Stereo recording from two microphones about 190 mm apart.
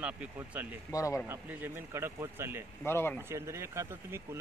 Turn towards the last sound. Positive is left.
turn(degrees=-15)  # may be behind; listen again after turning